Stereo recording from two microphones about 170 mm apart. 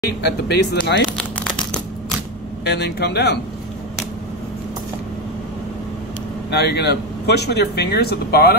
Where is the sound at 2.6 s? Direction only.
75° left (ahead or behind).